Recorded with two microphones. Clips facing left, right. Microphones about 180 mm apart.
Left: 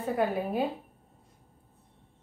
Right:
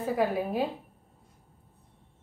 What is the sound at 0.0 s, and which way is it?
Speech, centre (ahead or behind).